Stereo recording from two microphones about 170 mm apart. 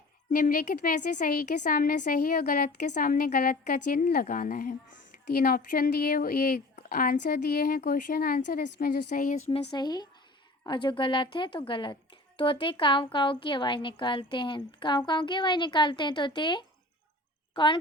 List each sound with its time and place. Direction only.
0.3 s a woman's voice: 55° left (ahead or behind)
9.7 s speech: 25° left (ahead or behind)